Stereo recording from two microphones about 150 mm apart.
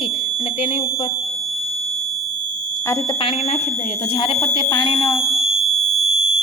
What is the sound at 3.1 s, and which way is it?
Speech, 40° left (ahead or behind).